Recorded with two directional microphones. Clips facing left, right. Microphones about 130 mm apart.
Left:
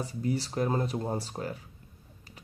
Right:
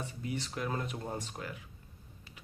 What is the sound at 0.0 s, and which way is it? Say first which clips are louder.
Speech: left 7 dB; 35° left (ahead or behind).